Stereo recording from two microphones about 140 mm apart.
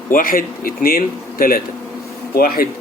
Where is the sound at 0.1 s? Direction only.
90° left.